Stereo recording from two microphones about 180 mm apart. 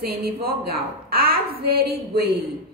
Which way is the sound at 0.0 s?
60° right (ahead or behind).